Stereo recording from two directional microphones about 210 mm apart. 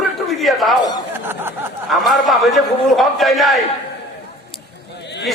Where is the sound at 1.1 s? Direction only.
10° right (ahead or behind).